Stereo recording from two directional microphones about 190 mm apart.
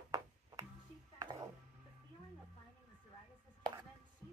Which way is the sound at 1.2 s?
20° right (ahead or behind).